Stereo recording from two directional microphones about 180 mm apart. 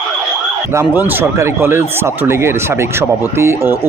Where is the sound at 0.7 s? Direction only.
15° right (ahead or behind).